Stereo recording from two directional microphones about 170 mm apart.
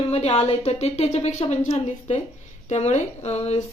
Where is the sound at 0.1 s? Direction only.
35° left (ahead or behind).